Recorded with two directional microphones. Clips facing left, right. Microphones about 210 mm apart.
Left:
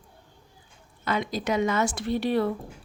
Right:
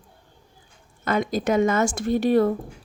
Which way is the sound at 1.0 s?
50° right (ahead or behind).